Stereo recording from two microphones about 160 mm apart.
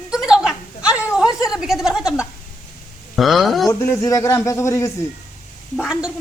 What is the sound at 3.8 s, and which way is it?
A man's voice, 20° left (ahead or behind).